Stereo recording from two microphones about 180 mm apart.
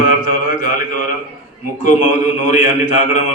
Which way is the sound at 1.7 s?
45° left (ahead or behind).